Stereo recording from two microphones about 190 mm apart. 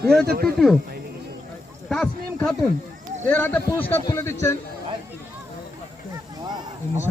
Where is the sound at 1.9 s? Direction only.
5° left (ahead or behind).